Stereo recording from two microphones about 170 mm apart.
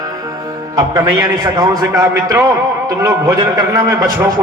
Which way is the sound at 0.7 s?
20° right (ahead or behind).